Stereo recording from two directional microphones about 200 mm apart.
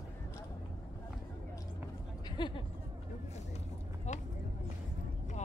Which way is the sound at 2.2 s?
25° left (ahead or behind).